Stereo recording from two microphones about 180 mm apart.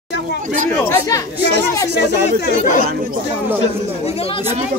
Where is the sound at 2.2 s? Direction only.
45° left (ahead or behind).